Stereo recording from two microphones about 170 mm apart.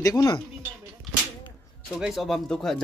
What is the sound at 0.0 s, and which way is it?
Speech, 20° left (ahead or behind).